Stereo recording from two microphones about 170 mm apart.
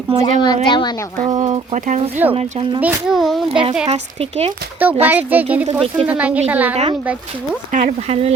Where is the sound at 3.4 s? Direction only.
30° right (ahead or behind).